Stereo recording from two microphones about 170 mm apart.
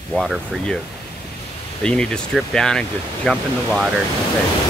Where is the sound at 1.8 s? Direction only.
5° left (ahead or behind).